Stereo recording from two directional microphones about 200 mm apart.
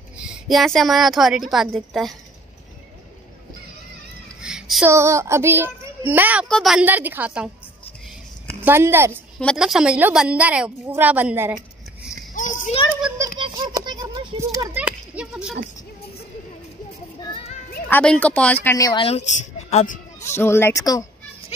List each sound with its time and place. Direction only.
0.2 s a woman's voice: centre (ahead or behind)
4.4 s a sound: 5° right (ahead or behind)
4.8 s a child's voice: 15° right (ahead or behind)
8.6 s a child's voice: 10° right (ahead or behind)
9.4 s a woman's voice: centre (ahead or behind)
12.4 s children playing: 40° left (ahead or behind)
13.4 s a sound: 20° right (ahead or behind); by 15.5 s 5° right (ahead or behind)
17.2 s children playing: 30° left (ahead or behind)
17.8 s speech: 5° left (ahead or behind)
19.0 s a woman's voice: 35° left (ahead or behind)
20.3 s speech: 10° left (ahead or behind)